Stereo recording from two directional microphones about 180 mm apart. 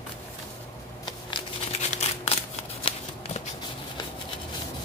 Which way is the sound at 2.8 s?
30° left (ahead or behind).